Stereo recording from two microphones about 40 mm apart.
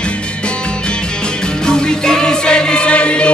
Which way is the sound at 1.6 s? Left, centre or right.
Centre.